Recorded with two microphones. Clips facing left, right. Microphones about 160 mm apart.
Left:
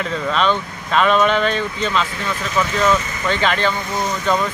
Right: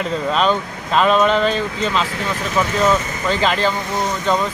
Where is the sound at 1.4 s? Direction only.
35° right (ahead or behind).